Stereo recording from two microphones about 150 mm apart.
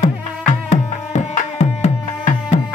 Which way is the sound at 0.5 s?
55° left (ahead or behind).